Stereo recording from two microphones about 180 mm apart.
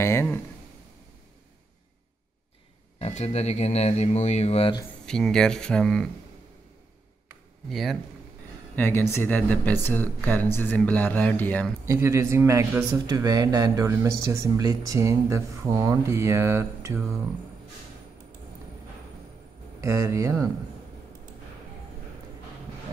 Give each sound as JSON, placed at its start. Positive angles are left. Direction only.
{"t": 0.0, "sound": "speech", "side_deg": 15}
{"t": 3.0, "sound": "speech", "side_deg": 35}
{"t": 5.0, "sound": "speech", "side_deg": 5}
{"t": 7.7, "sound": "speech", "side_deg": 0}
{"t": 8.7, "sound": "speech", "side_deg": 10}
{"t": 11.8, "sound": "speech", "side_deg": -15}
{"t": 19.8, "sound": "speech", "side_deg": -15}